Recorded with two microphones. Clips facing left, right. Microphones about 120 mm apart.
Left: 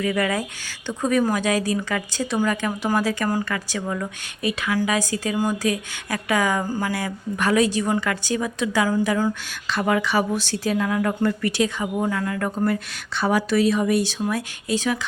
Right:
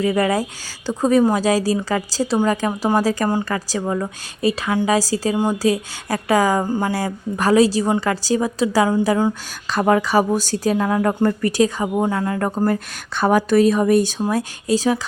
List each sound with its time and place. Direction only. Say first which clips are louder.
0.0 s a woman's voice: right 5 dB; 35° right (ahead or behind)
9.6 s a woman's voice: right 5 dB; 40° right (ahead or behind)